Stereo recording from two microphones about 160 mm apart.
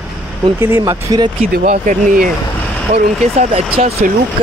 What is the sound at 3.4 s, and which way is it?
Speech, 40° right (ahead or behind).